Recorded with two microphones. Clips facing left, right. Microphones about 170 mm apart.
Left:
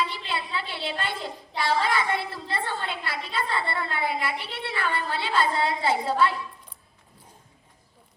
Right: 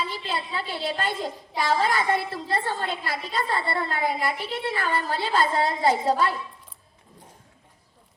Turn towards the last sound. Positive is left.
turn(degrees=-40)  # may be behind; listen again after turning